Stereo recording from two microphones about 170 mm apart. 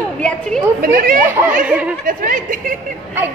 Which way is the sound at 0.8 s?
55° right (ahead or behind).